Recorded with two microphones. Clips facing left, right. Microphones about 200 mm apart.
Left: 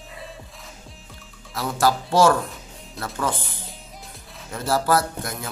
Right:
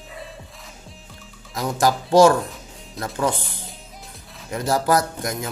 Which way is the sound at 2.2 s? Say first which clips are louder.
Right 5 dB; 15° right (ahead or behind).